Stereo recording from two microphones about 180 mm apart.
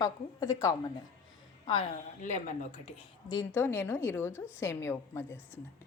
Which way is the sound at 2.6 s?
40° left (ahead or behind).